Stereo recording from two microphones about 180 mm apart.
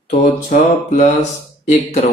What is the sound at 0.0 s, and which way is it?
Mantra, 45° left (ahead or behind).